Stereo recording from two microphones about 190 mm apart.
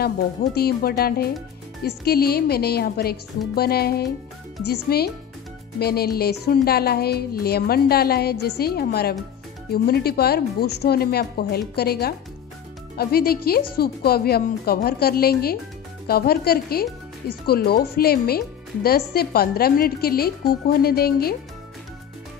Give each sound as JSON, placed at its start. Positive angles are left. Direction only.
{"t": 0.6, "sound": "speech", "side_deg": 55}